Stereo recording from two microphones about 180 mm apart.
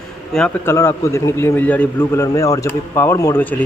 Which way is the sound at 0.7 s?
15° left (ahead or behind).